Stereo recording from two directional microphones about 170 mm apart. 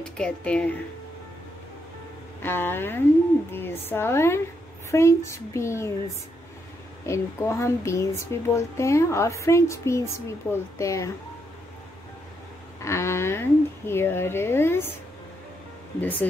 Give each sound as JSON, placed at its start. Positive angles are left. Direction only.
{"t": 0.0, "sound": "speech", "side_deg": 5}
{"t": 2.4, "sound": "speech", "side_deg": 15}
{"t": 7.1, "sound": "speech", "side_deg": 15}
{"t": 12.8, "sound": "speech", "side_deg": 15}
{"t": 16.0, "sound": "speech", "side_deg": 10}